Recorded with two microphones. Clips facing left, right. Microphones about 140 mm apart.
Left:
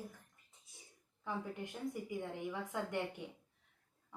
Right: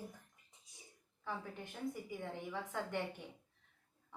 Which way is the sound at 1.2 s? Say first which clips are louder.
Left 3 dB; 15° left (ahead or behind).